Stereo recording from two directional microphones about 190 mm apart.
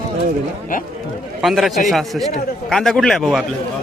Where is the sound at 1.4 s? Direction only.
Centre (ahead or behind).